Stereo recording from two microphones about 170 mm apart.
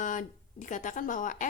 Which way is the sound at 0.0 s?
50° left (ahead or behind).